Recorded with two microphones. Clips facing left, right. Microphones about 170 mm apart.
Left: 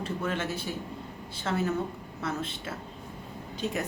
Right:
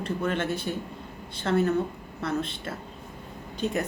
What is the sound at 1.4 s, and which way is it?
A woman's voice, 5° left (ahead or behind).